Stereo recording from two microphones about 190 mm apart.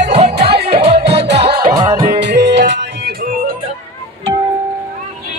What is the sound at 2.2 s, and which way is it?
Music, 65° right (ahead or behind).